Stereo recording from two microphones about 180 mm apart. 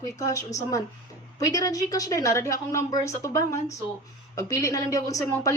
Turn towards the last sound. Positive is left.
turn(degrees=20)  # may be behind; listen again after turning